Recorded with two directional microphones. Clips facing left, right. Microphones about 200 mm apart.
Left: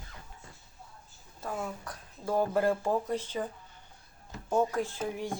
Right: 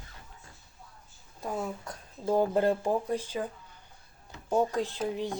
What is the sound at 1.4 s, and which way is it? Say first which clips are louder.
Speech: right 2 dB; 20° right (ahead or behind).